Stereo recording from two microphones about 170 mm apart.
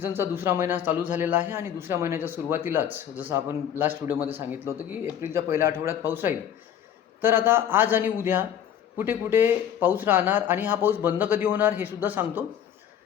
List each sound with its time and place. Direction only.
0.0 s speech: 15° right (ahead or behind)